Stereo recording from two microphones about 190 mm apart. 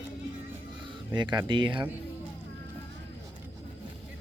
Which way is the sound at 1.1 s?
25° right (ahead or behind).